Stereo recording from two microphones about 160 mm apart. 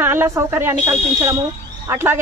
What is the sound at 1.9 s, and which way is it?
Speech, 15° right (ahead or behind).